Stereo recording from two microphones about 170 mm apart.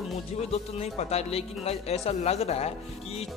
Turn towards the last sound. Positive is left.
turn(degrees=35)  # may be behind; listen again after turning